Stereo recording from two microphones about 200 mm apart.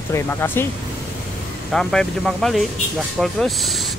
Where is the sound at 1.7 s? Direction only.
Centre (ahead or behind).